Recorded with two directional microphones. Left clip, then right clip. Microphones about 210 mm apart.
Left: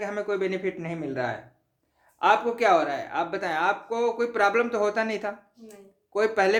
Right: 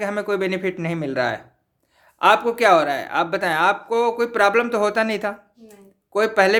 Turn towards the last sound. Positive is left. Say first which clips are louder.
# right 6 dB
turn(degrees=-35)  # may be behind; listen again after turning